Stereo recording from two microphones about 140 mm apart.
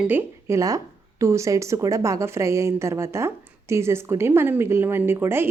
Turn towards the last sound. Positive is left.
turn(degrees=-15)  # may be behind; listen again after turning